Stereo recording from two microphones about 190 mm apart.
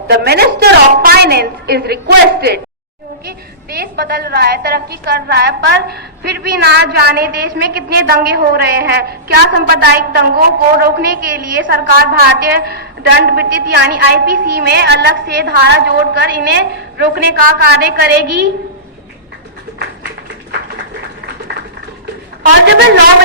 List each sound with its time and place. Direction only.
0.1 s a woman's voice: 55° right (ahead or behind)
3.2 s a woman's voice: 55° right (ahead or behind)
22.6 s a woman's voice: 70° right (ahead or behind)